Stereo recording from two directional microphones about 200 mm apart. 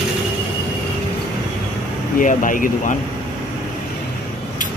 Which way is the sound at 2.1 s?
40° left (ahead or behind).